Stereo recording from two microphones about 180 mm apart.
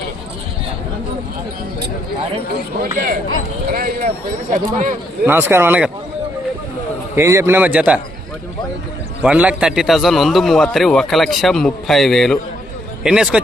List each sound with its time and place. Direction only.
3.7 s speech: 55° right (ahead or behind)
5.2 s a man's voice: 10° right (ahead or behind)
7.2 s a man's voice: 15° right (ahead or behind)
9.2 s a man's voice: 5° right (ahead or behind)